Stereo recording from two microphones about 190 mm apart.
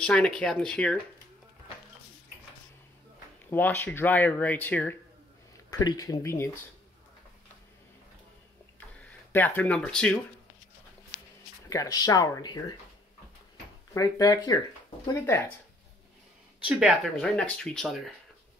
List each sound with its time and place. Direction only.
0.0 s speech: 5° left (ahead or behind)
3.4 s speech: 10° left (ahead or behind)
5.7 s speech: 20° left (ahead or behind)
8.7 s tick-tock: 10° left (ahead or behind)
11.7 s speech: 20° left (ahead or behind)
13.9 s speech: 20° left (ahead or behind)
16.6 s speech: centre (ahead or behind)